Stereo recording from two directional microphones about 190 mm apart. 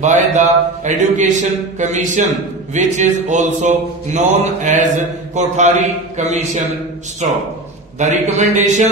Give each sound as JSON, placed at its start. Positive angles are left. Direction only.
{"t": 0.0, "sound": "mantra", "side_deg": -40}